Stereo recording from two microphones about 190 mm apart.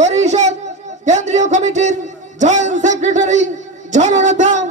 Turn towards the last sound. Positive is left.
turn(degrees=-40)  # may be behind; listen again after turning